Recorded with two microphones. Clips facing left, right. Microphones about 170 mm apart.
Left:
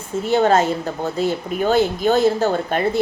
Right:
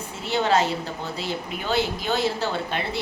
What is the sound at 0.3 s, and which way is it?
A woman's voice, 45° left (ahead or behind).